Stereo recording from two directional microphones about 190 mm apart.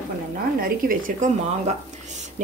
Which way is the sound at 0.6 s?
45° right (ahead or behind).